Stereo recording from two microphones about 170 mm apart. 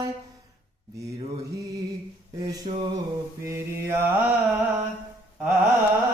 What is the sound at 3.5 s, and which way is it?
Mantra, 15° right (ahead or behind).